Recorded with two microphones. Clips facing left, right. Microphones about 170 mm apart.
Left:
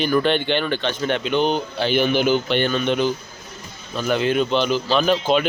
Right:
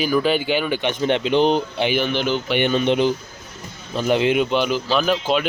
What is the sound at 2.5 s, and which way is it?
Speech, 20° right (ahead or behind).